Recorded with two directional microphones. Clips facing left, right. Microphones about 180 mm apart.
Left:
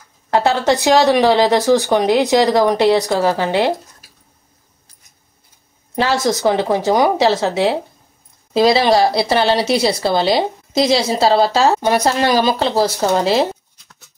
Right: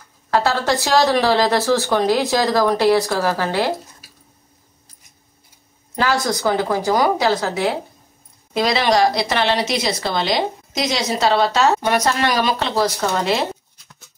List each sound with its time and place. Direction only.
0.3 s speech: 20° left (ahead or behind)
5.9 s speech: 25° left (ahead or behind)